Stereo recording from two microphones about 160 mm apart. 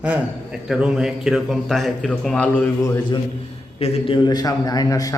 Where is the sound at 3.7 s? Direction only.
35° left (ahead or behind).